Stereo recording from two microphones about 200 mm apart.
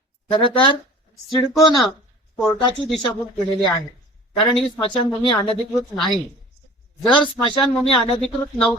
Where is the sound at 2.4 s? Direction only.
Centre (ahead or behind).